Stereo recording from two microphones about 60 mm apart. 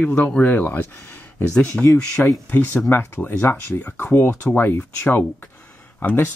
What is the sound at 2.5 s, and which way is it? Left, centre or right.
Speech, left.